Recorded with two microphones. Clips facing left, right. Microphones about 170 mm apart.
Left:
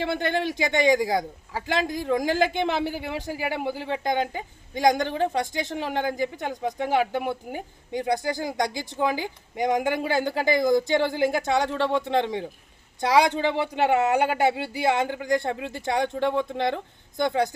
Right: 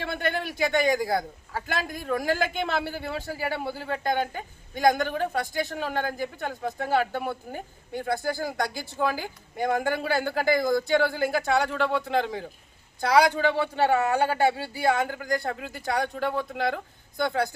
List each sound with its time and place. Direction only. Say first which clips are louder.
0.1 s speech: left 4 dB; 20° left (ahead or behind)